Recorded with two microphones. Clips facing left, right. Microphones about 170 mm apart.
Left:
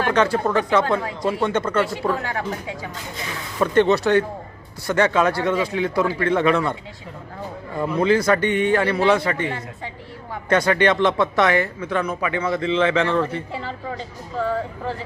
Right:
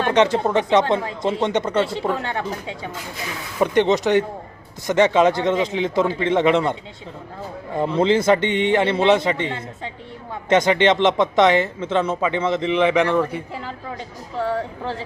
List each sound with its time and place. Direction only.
0.0 s speech: 20° right (ahead or behind)
7.8 s speech: 25° right (ahead or behind)